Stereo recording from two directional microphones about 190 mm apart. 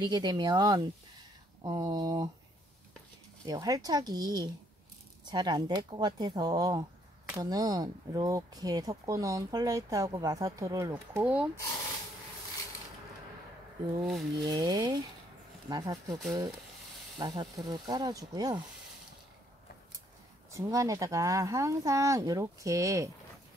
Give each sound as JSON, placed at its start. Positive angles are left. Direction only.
{"t": 0.0, "sound": "speech", "side_deg": -20}
{"t": 3.4, "sound": "speech", "side_deg": -20}
{"t": 14.0, "sound": "speech", "side_deg": 0}
{"t": 14.4, "sound": "speech", "side_deg": -20}
{"t": 17.2, "sound": "speech", "side_deg": -20}
{"t": 20.5, "sound": "speech", "side_deg": -15}